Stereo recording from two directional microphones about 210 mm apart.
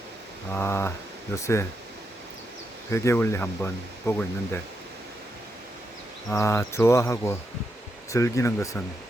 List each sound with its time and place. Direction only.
0.5 s speech: 10° left (ahead or behind)
2.9 s speech: 15° left (ahead or behind)
6.3 s speech: 10° left (ahead or behind)